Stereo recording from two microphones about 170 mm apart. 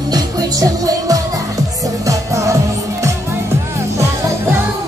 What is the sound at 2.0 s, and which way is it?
Music of asia, 20° right (ahead or behind).